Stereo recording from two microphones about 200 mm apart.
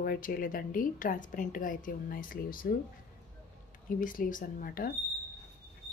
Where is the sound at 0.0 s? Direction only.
45° left (ahead or behind).